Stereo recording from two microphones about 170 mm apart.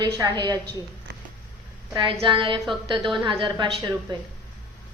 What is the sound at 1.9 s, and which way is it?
Speech, 25° right (ahead or behind).